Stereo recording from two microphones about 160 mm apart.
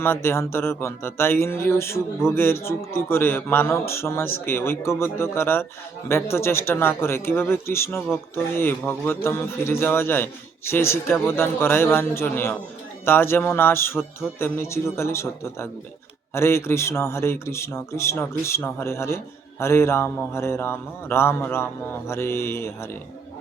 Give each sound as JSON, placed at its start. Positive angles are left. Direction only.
{"t": 0.0, "sound": "speech", "side_deg": 15}